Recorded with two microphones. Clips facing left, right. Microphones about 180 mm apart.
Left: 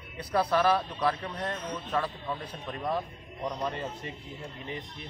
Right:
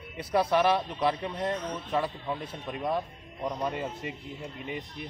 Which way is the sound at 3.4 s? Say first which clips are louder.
Right 2 dB; 10° right (ahead or behind).